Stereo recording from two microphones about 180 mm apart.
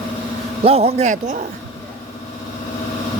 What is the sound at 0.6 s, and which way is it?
Speech, 35° right (ahead or behind).